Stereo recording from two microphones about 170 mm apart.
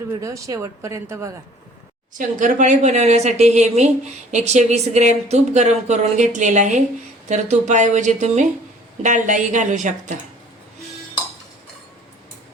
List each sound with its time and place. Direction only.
0.2 s speech: 20° right (ahead or behind)
2.1 s speech: 50° right (ahead or behind)